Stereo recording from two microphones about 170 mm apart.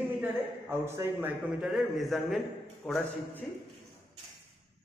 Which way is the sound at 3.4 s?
5° left (ahead or behind).